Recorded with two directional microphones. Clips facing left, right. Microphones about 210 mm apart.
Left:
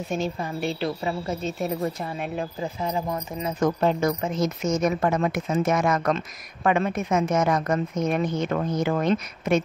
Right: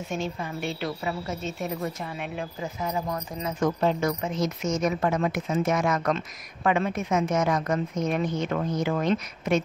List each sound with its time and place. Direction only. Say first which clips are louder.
0.1 s a woman's voice: left 3 dB; 35° left (ahead or behind)
3.5 s a woman's voice: left 2 dB; 40° left (ahead or behind)